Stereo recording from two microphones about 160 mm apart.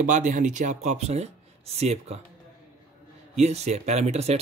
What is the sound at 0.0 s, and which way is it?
Speech, 55° right (ahead or behind).